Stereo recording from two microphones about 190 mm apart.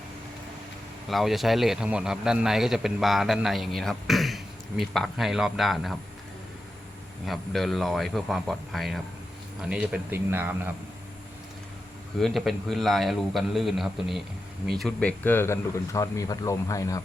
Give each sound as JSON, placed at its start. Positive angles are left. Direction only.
{"t": 1.0, "sound": "a man's voice", "side_deg": 0}
{"t": 7.3, "sound": "a man's voice", "side_deg": 0}
{"t": 12.2, "sound": "a man's voice", "side_deg": 0}